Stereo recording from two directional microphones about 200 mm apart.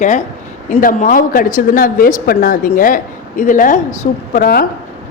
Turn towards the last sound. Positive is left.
turn(degrees=50)  # may be behind; listen again after turning